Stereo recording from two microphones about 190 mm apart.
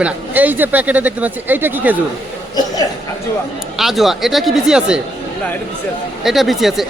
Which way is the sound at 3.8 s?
Centre (ahead or behind).